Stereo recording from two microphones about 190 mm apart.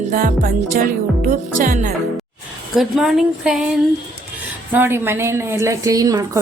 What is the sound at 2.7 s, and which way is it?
A woman's voice, centre (ahead or behind).